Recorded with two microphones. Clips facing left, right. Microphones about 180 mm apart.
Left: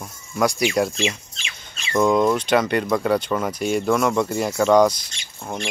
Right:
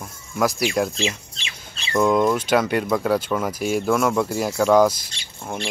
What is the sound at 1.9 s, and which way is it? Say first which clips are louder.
Speech: left 1 dB; centre (ahead or behind).